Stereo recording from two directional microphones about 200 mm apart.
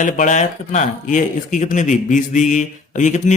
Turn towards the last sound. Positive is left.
turn(degrees=35)  # may be behind; listen again after turning